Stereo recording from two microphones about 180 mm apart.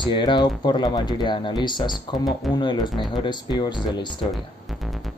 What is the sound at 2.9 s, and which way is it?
Speech, centre (ahead or behind).